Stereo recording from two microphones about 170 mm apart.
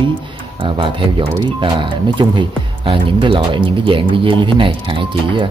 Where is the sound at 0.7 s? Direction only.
30° right (ahead or behind).